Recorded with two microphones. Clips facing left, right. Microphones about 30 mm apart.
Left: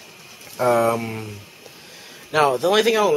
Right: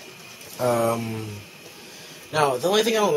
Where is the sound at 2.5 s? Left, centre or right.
Left.